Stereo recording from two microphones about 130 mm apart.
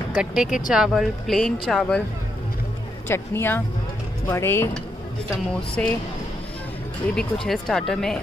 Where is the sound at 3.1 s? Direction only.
15° left (ahead or behind).